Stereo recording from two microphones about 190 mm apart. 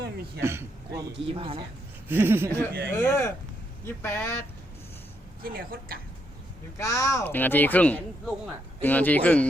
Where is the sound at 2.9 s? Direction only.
15° left (ahead or behind).